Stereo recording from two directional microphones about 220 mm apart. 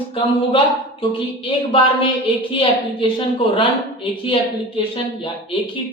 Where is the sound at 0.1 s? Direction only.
25° left (ahead or behind).